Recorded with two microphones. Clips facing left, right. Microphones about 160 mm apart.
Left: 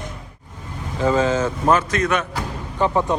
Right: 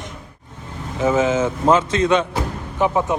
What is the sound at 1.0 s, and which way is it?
Speech, 20° right (ahead or behind).